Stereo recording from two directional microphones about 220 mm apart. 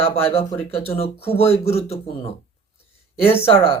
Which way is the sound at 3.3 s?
25° left (ahead or behind).